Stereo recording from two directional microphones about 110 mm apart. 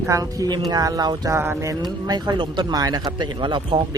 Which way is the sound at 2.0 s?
40° right (ahead or behind).